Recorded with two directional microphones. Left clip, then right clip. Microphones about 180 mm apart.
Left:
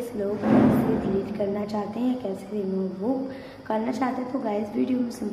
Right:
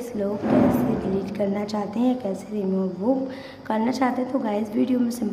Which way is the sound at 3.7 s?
25° right (ahead or behind).